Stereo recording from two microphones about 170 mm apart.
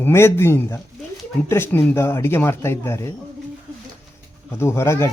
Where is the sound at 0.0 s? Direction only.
15° left (ahead or behind).